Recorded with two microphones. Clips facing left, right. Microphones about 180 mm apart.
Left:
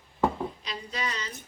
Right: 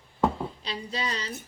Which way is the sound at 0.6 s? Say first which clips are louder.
Right 2 dB; 30° right (ahead or behind).